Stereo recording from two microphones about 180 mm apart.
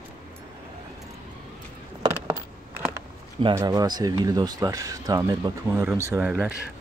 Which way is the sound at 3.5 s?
20° right (ahead or behind).